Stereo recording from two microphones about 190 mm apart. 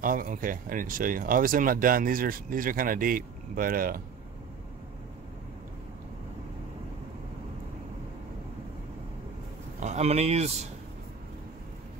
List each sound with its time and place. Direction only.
0.0 s speech: 45° right (ahead or behind)
9.8 s speech: 35° right (ahead or behind)